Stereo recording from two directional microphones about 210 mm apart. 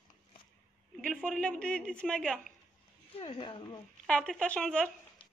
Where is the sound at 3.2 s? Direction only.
25° left (ahead or behind).